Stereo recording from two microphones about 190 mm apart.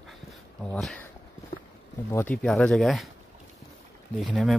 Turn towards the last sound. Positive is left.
turn(degrees=0)  # may be behind; listen again after turning